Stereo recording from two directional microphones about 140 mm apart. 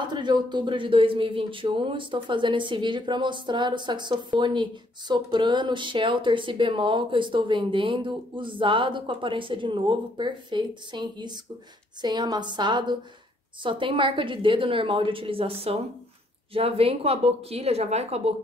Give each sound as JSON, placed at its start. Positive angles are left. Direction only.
{"t": 0.0, "sound": "a woman's voice", "side_deg": -30}